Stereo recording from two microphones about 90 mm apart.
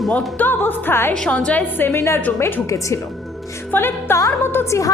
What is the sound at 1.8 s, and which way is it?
Speech, 25° left (ahead or behind).